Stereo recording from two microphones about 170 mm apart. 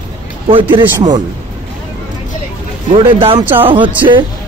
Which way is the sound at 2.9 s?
30° right (ahead or behind).